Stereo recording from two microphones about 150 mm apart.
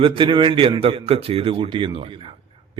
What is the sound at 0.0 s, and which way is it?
A man's voice, 35° right (ahead or behind).